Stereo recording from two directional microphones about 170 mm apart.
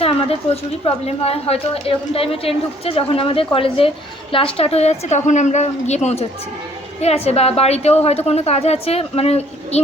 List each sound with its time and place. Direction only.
0.0 s a woman's voice: 35° left (ahead or behind)